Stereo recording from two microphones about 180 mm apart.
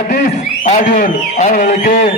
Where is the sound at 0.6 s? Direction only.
50° left (ahead or behind).